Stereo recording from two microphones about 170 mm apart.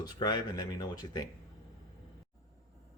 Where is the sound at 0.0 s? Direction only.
25° left (ahead or behind).